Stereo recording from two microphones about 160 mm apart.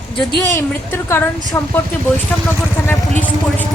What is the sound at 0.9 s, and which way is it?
Speech, 15° left (ahead or behind).